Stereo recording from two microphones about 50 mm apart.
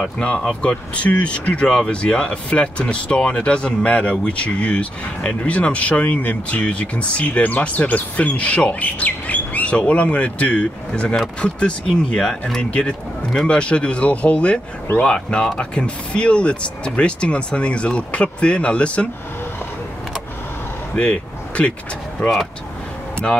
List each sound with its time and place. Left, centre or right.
0.0 s speech: left
14.9 s speech: left
15.2 s speech: centre
20.9 s a sound: left
22.2 s speech: left